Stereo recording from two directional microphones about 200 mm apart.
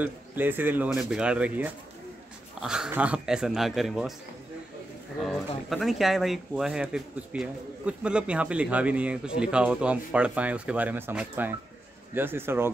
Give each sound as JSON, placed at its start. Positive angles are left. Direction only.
{"t": 0.0, "sound": "speech", "side_deg": -10}
{"t": 5.7, "sound": "speech", "side_deg": 0}